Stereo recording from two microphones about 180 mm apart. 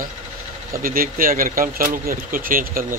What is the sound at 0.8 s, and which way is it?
Speech, 50° right (ahead or behind).